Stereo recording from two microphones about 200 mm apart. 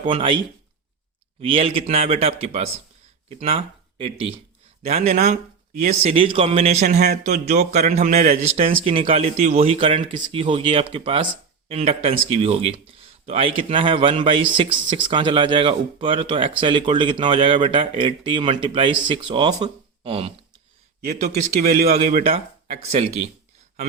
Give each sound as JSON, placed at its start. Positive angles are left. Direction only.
{"t": 0.0, "sound": "speech", "side_deg": -25}
{"t": 1.4, "sound": "speech", "side_deg": -30}
{"t": 21.0, "sound": "speech", "side_deg": -45}
{"t": 21.6, "sound": "speech", "side_deg": -50}
{"t": 22.2, "sound": "speech", "side_deg": -30}